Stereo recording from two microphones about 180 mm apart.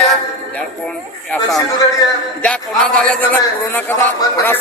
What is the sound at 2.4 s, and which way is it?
Speech, 5° left (ahead or behind).